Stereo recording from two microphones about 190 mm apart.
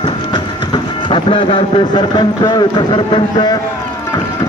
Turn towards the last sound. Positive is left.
turn(degrees=20)  # may be behind; listen again after turning